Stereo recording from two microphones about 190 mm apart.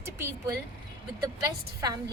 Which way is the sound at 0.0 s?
15° right (ahead or behind).